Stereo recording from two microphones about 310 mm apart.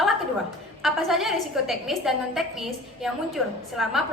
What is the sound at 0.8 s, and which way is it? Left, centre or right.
A woman's voice, centre.